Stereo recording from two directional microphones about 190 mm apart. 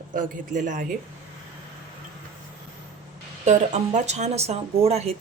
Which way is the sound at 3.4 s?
35° right (ahead or behind).